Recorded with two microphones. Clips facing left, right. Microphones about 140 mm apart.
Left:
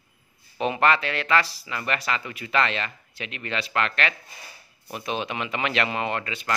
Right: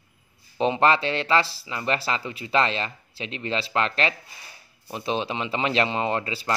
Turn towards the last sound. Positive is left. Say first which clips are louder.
# right 3 dB
turn(degrees=-30)  # may be behind; listen again after turning